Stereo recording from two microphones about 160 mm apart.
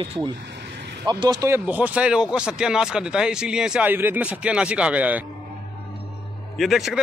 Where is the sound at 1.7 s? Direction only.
10° right (ahead or behind).